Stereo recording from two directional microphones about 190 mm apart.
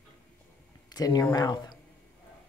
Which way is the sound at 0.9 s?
20° left (ahead or behind).